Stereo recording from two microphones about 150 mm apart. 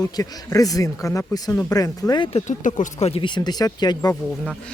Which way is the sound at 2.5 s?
55° left (ahead or behind).